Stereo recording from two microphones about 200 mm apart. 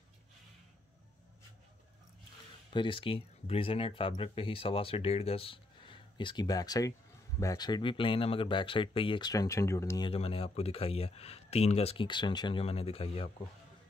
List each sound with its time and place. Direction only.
2.7 s speech: 25° left (ahead or behind)
10.0 s speech: 30° left (ahead or behind)